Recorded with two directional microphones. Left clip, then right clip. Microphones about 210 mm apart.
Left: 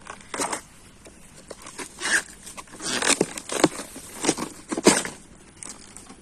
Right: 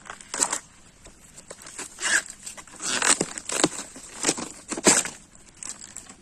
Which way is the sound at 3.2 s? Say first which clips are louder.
Left 3 dB; 35° right (ahead or behind).